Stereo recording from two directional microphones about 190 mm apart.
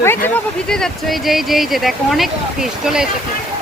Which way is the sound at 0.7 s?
Centre (ahead or behind).